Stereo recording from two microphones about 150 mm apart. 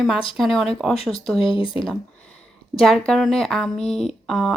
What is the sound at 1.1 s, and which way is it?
Speech, 35° left (ahead or behind).